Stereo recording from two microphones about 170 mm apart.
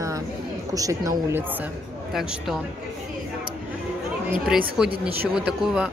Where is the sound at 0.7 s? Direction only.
20° right (ahead or behind).